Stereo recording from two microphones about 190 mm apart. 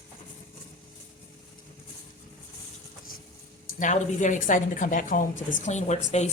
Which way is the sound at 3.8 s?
40° left (ahead or behind).